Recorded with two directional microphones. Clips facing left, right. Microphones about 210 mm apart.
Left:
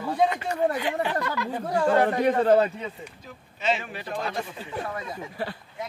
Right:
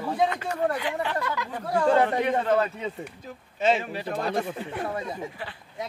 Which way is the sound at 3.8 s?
35° right (ahead or behind).